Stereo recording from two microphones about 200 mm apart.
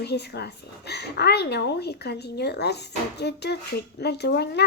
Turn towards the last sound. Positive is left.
turn(degrees=55)  # may be behind; listen again after turning